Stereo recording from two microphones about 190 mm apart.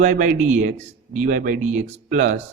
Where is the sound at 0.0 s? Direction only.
45° right (ahead or behind).